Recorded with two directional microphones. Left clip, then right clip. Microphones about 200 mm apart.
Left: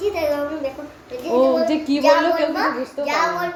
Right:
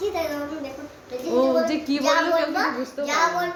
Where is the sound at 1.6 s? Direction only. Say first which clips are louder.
Left 4 dB; centre (ahead or behind).